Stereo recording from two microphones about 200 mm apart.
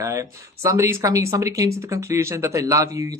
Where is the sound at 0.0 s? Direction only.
15° right (ahead or behind).